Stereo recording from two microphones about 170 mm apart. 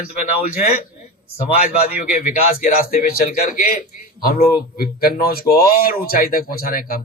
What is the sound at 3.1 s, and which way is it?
Speech, 60° left (ahead or behind).